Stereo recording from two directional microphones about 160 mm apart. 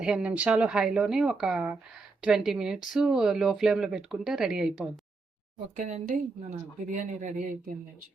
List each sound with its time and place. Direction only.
0.0 s speech: 5° right (ahead or behind)
5.7 s speech: 50° right (ahead or behind)